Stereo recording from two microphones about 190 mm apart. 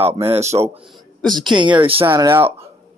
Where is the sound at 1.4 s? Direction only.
25° right (ahead or behind).